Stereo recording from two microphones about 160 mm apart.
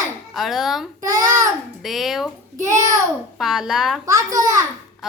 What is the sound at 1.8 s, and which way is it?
Speech, centre (ahead or behind).